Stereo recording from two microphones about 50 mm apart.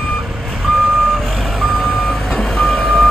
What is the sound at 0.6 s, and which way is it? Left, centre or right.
Reversing beeps, centre.